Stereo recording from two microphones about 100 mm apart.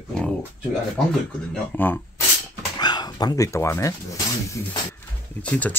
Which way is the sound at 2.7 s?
45° left (ahead or behind).